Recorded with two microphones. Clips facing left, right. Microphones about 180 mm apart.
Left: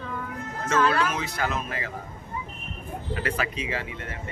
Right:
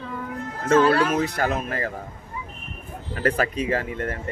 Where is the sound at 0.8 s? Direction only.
30° right (ahead or behind).